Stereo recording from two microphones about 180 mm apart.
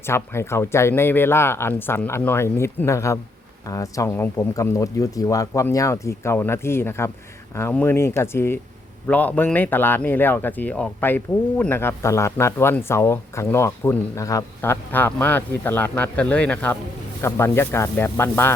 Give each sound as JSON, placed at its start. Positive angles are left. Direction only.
{"t": 0.0, "sound": "speech", "side_deg": 15}